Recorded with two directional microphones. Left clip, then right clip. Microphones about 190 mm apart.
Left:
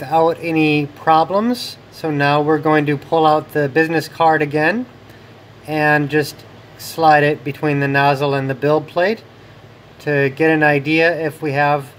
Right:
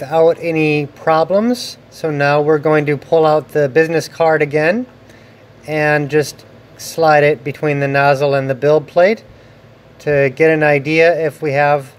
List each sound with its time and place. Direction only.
0.0 s speech: 25° right (ahead or behind)